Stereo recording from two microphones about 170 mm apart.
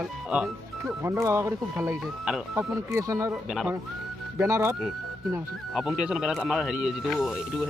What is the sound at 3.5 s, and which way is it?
Speech, 5° right (ahead or behind).